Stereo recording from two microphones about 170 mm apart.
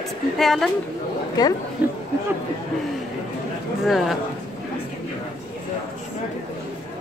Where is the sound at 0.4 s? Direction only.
Centre (ahead or behind).